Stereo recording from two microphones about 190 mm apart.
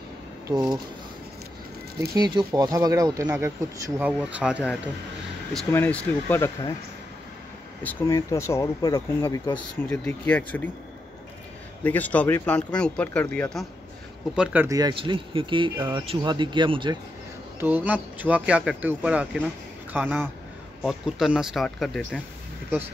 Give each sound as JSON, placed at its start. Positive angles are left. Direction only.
{"t": 0.5, "sound": "speech", "side_deg": -20}
{"t": 2.0, "sound": "speech", "side_deg": -20}
{"t": 5.7, "sound": "speech", "side_deg": 10}
{"t": 7.8, "sound": "speech", "side_deg": 15}
{"t": 9.8, "sound": "speech", "side_deg": 10}
{"t": 11.8, "sound": "speech", "side_deg": 10}
{"t": 14.3, "sound": "speech", "side_deg": -5}
{"t": 14.8, "sound": "speech", "side_deg": -25}
{"t": 17.6, "sound": "speech", "side_deg": -10}